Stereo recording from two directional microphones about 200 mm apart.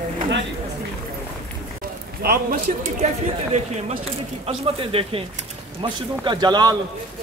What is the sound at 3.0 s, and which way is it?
Speech, 35° right (ahead or behind).